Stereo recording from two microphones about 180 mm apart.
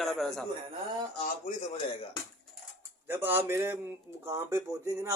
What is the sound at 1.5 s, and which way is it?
Speech, 40° left (ahead or behind).